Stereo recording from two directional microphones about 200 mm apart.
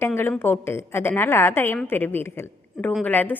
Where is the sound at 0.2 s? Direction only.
10° left (ahead or behind).